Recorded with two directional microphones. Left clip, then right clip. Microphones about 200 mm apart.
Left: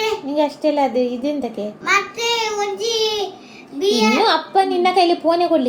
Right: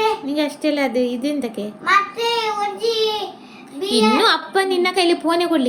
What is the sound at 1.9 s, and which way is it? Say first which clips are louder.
Child singing: right 1 dB; 10° right (ahead or behind).